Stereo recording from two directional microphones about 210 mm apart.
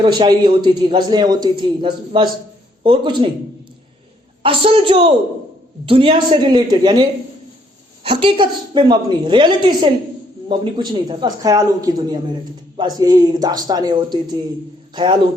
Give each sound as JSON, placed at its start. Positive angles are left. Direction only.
{"t": 0.0, "sound": "a man's voice", "side_deg": -20}
{"t": 4.4, "sound": "a man's voice", "side_deg": -25}